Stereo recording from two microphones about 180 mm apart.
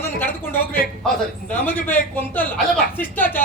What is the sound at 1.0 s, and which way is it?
Speech, 10° left (ahead or behind).